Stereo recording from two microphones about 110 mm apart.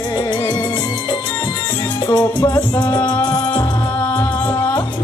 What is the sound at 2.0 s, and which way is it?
Music, 35° left (ahead or behind).